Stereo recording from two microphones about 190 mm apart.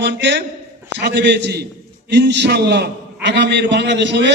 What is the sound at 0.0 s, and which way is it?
A man's voice, 70° right (ahead or behind).